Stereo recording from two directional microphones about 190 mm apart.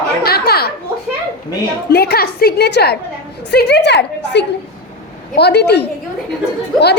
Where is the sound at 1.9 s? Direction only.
55° left (ahead or behind).